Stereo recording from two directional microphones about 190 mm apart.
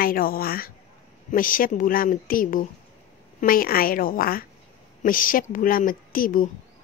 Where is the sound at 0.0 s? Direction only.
50° left (ahead or behind).